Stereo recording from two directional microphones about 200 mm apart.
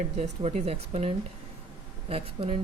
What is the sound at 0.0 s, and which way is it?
Speech, 35° right (ahead or behind).